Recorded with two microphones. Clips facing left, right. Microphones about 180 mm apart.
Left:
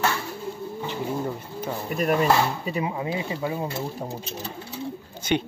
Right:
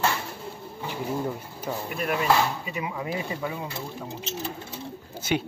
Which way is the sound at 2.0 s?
40° left (ahead or behind).